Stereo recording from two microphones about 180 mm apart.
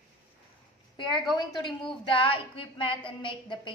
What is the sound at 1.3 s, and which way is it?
A woman's voice, 25° left (ahead or behind).